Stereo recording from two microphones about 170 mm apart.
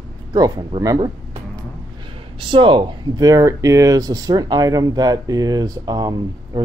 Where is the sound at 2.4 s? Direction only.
30° right (ahead or behind).